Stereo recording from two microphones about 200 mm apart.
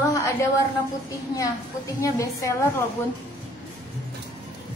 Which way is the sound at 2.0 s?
15° left (ahead or behind).